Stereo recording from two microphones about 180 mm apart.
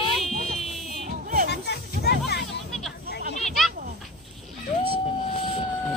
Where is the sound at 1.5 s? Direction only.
65° left (ahead or behind).